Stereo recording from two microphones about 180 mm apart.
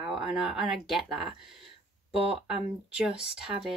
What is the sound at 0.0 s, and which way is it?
Speech, 5° right (ahead or behind).